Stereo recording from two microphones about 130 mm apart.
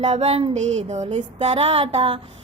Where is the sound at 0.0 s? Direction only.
55° right (ahead or behind).